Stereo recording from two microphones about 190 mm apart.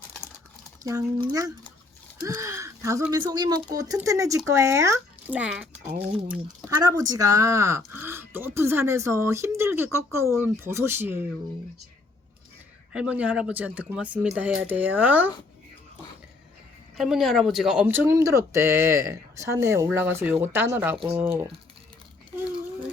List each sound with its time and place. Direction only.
0.9 s speech: 20° right (ahead or behind)
6.7 s speech: 20° right (ahead or behind)
12.9 s speech: 5° right (ahead or behind)
17.0 s speech: centre (ahead or behind)